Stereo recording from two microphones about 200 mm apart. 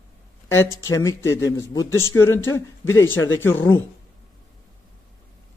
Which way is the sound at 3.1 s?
75° left (ahead or behind).